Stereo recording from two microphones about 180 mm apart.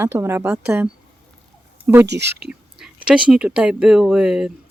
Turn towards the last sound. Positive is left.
turn(degrees=-5)  # may be behind; listen again after turning